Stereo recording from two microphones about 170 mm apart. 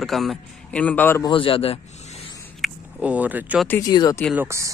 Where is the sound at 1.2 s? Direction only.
30° left (ahead or behind).